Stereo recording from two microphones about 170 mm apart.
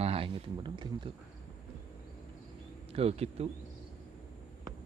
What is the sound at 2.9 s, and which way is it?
Speech, 35° right (ahead or behind).